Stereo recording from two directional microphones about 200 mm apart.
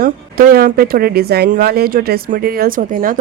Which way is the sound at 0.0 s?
50° right (ahead or behind).